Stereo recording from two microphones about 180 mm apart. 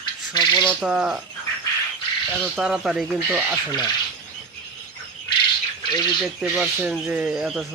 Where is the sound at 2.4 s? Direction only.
5° right (ahead or behind).